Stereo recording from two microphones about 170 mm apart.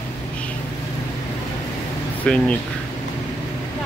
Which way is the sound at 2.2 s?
5° left (ahead or behind).